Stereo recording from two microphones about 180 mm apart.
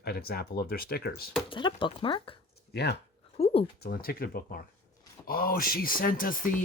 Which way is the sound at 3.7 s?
60° left (ahead or behind).